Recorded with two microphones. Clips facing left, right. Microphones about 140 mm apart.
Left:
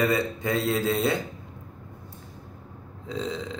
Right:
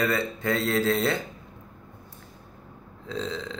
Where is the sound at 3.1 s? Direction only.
15° left (ahead or behind).